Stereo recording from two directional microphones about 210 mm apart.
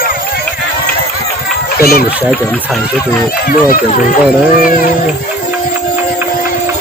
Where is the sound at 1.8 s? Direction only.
45° left (ahead or behind).